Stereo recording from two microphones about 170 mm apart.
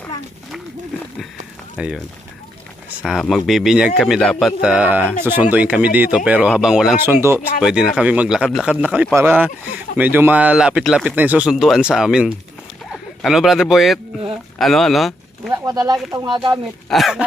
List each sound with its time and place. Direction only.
1.8 s speech: 5° right (ahead or behind)
3.0 s a man's voice: centre (ahead or behind)
7.1 s a man's voice: 15° right (ahead or behind)
15.5 s speech: 20° right (ahead or behind)
16.9 s a man's voice: centre (ahead or behind)